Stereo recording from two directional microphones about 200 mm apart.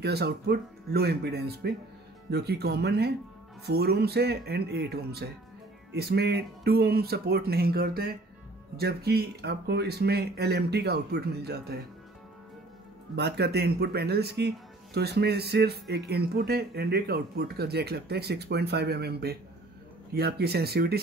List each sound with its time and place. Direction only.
0.0 s speech: 55° right (ahead or behind)
13.1 s speech: 55° right (ahead or behind)